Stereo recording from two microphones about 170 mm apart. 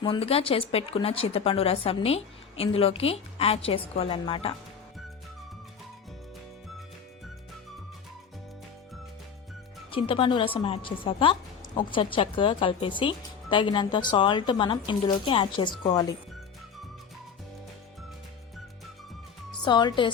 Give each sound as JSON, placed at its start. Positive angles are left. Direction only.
{"t": 0.0, "sound": "speech", "side_deg": 35}
{"t": 9.9, "sound": "a woman's voice", "side_deg": 30}
{"t": 19.6, "sound": "a woman's voice", "side_deg": 25}